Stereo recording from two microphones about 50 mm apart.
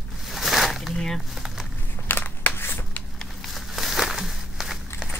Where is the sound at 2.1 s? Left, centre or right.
Left.